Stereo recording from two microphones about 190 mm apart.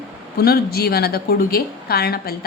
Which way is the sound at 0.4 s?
55° left (ahead or behind).